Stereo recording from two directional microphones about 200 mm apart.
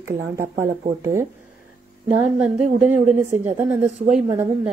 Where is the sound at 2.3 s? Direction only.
10° right (ahead or behind).